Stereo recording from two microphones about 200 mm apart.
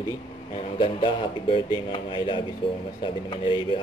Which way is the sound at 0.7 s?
25° left (ahead or behind).